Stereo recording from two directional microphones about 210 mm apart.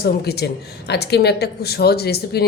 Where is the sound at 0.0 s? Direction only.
50° left (ahead or behind).